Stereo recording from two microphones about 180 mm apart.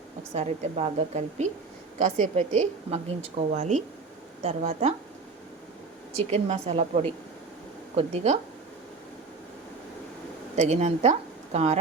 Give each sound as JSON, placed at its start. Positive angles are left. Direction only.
{"t": 0.3, "sound": "a woman's voice", "side_deg": -40}
{"t": 6.1, "sound": "a woman's voice", "side_deg": -35}
{"t": 10.5, "sound": "speech", "side_deg": -40}